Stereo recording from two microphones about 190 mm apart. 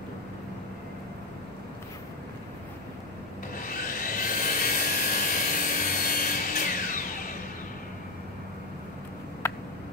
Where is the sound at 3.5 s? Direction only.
45° left (ahead or behind).